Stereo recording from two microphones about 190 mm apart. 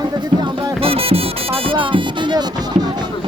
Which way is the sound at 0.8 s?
30° right (ahead or behind).